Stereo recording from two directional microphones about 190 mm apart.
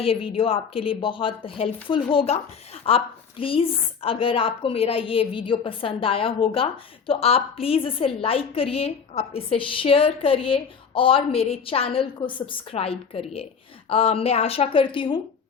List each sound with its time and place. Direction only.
0.0 s a woman's voice: 30° left (ahead or behind)